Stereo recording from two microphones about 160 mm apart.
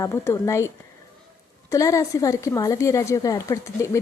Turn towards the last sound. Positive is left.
turn(degrees=20)  # may be behind; listen again after turning